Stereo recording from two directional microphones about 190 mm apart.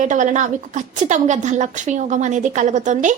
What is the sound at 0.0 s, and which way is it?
A woman's voice, 40° right (ahead or behind).